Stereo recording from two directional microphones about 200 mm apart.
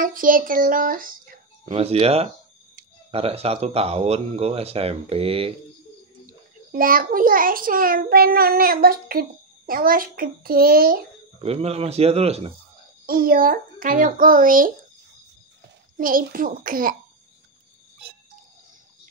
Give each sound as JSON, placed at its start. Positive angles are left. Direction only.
{"t": 0.0, "sound": "speech", "side_deg": -45}
{"t": 1.7, "sound": "speech", "side_deg": -30}
{"t": 6.7, "sound": "a child's voice", "side_deg": -45}
{"t": 11.4, "sound": "speech", "side_deg": -30}
{"t": 13.0, "sound": "a child's voice", "side_deg": -45}
{"t": 16.0, "sound": "a child's voice", "side_deg": -45}